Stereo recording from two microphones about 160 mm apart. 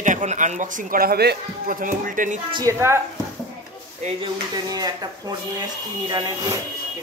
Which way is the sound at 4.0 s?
40° right (ahead or behind).